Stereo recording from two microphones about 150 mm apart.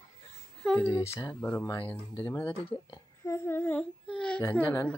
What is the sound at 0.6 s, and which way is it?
Speech, 15° left (ahead or behind).